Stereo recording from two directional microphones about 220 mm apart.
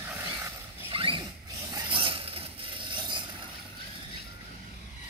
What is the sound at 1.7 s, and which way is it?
Vehicle, 20° right (ahead or behind).